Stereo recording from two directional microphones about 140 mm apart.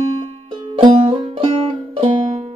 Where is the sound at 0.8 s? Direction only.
40° right (ahead or behind).